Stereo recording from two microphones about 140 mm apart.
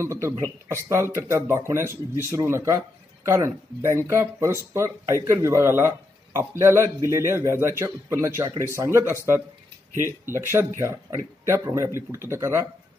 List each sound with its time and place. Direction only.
0.0 s speech: 20° right (ahead or behind)
10.5 s speech: 20° right (ahead or behind)